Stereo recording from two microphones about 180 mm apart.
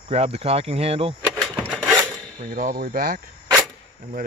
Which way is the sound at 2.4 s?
50° right (ahead or behind).